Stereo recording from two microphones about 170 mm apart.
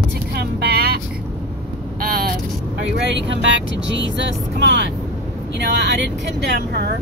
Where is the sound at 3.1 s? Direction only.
90° right.